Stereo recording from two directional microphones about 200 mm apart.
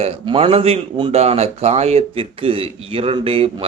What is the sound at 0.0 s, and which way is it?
Speech, 30° right (ahead or behind).